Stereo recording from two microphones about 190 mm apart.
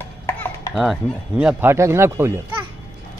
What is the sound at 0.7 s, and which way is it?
Speech, centre (ahead or behind).